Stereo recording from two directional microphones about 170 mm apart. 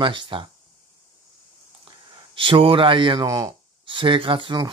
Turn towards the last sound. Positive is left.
turn(degrees=-25)  # may be behind; listen again after turning